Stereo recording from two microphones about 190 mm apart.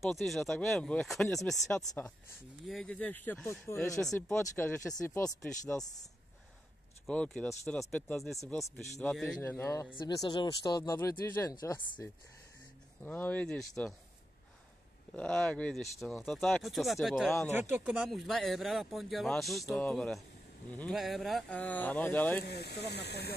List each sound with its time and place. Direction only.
0.1 s speech: centre (ahead or behind)
7.1 s speech: 5° left (ahead or behind)
9.4 s speech: 15° left (ahead or behind)
15.1 s speech: 5° left (ahead or behind)
22.5 s speech: 60° left (ahead or behind)